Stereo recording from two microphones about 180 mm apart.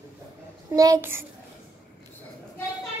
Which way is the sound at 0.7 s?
15° right (ahead or behind).